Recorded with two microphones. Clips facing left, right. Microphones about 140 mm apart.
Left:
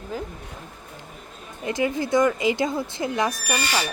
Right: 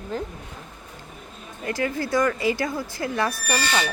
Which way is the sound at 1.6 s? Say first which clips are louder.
Left 2 dB; 20° left (ahead or behind).